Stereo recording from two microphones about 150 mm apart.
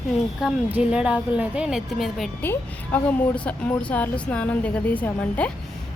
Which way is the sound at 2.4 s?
10° left (ahead or behind).